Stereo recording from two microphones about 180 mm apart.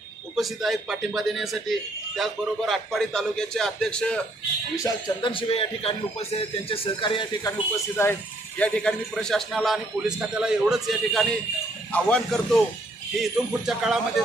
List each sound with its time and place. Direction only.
0.3 s speech: centre (ahead or behind)
4.8 s speech: 25° left (ahead or behind)
8.0 s speech: 15° left (ahead or behind); by 14.0 s centre (ahead or behind)